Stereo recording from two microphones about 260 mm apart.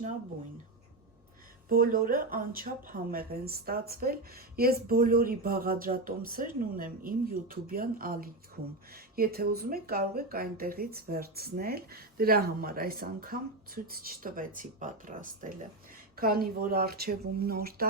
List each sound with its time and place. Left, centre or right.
1.7 s speech: right
8.9 s music: right
9.6 s speech: right